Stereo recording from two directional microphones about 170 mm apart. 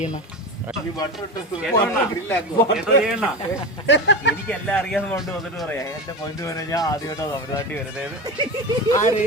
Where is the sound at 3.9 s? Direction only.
90° left.